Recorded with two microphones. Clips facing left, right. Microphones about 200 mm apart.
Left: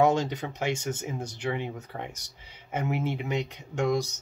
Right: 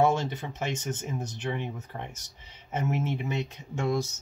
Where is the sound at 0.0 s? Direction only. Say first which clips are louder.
Left 2 dB; 15° left (ahead or behind).